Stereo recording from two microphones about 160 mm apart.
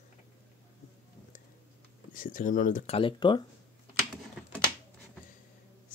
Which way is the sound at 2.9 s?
30° left (ahead or behind).